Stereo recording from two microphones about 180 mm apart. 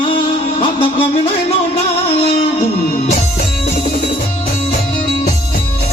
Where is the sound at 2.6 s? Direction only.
40° left (ahead or behind).